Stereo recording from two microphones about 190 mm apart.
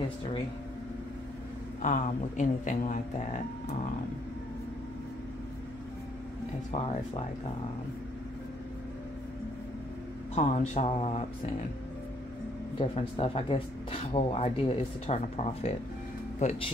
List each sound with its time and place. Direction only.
1.8 s speech: 40° left (ahead or behind)
10.3 s speech: 35° left (ahead or behind)
12.7 s speech: 30° left (ahead or behind)